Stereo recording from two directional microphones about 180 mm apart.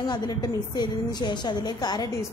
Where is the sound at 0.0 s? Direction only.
25° left (ahead or behind).